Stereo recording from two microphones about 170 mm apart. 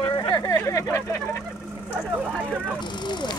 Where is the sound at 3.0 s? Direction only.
25° left (ahead or behind).